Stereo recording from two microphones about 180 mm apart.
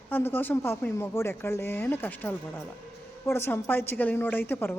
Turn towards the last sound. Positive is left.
turn(degrees=10)  # may be behind; listen again after turning